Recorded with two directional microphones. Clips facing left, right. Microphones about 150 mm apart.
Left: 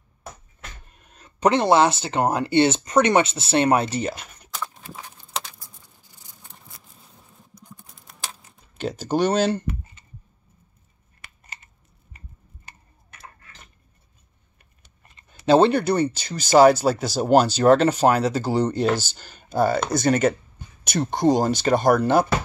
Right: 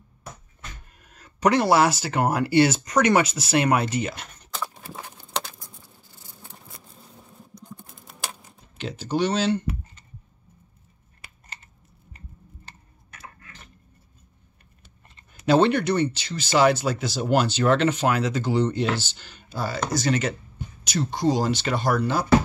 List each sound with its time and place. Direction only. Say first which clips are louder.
0.9 s speech: even; 25° left (ahead or behind)
4.6 s a sound: even; 5° right (ahead or behind)
5.3 s patter: right 2 dB; 5° right (ahead or behind)
8.7 s speech: left 3 dB; 40° left (ahead or behind)
15.4 s speech: left 3 dB; 30° left (ahead or behind); by 22.2 s 50° left (ahead or behind)